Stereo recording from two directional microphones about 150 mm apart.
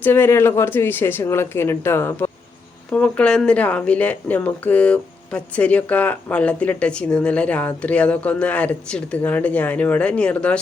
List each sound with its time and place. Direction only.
0.0 s speech: 15° left (ahead or behind)